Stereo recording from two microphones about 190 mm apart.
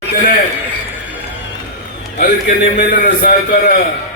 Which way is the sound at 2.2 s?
50° left (ahead or behind).